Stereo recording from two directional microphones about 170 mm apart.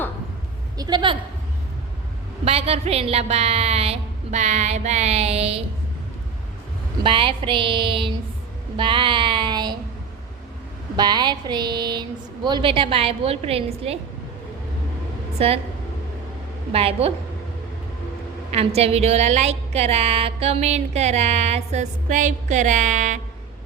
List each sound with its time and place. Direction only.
0.8 s a woman's voice: 25° right (ahead or behind)
2.4 s a woman's voice: 35° right (ahead or behind)
7.0 s a woman's voice: 30° right (ahead or behind)
10.9 s a woman's voice: 25° right (ahead or behind)
15.4 s a woman's voice: 35° right (ahead or behind)
16.7 s a woman's voice: 35° right (ahead or behind)
18.5 s a woman's voice: 35° right (ahead or behind)